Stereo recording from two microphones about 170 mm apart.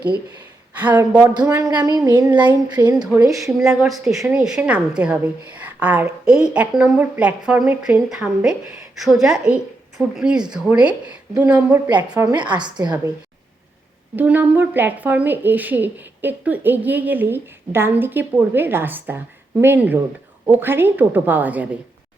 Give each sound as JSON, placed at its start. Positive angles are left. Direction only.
{"t": 0.8, "sound": "speech", "side_deg": -10}
{"t": 1.3, "sound": "a woman's voice", "side_deg": -25}
{"t": 3.3, "sound": "a woman's voice", "side_deg": 0}
{"t": 11.9, "sound": "a woman's voice", "side_deg": -25}
{"t": 14.2, "sound": "speech", "side_deg": -10}